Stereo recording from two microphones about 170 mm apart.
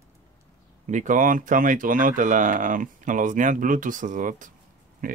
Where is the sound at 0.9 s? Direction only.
50° right (ahead or behind).